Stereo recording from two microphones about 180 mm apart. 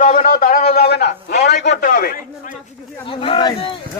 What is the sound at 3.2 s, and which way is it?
Speech, 30° left (ahead or behind).